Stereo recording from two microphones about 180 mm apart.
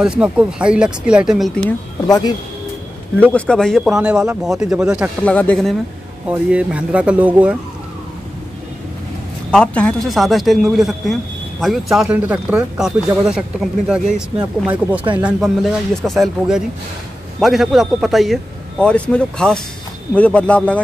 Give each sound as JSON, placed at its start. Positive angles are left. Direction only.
{"t": 0.0, "sound": "a man's voice", "side_deg": -5}
{"t": 2.0, "sound": "speech", "side_deg": 20}
{"t": 3.2, "sound": "a man's voice", "side_deg": 5}
{"t": 5.2, "sound": "speech", "side_deg": 5}
{"t": 6.2, "sound": "speech", "side_deg": -5}
{"t": 9.5, "sound": "a man's voice", "side_deg": 5}